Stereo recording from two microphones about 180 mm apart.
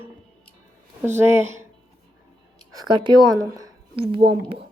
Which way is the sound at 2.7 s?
25° right (ahead or behind).